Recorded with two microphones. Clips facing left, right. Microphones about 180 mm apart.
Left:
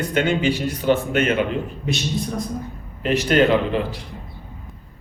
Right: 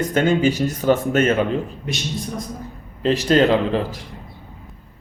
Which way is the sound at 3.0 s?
35° right (ahead or behind).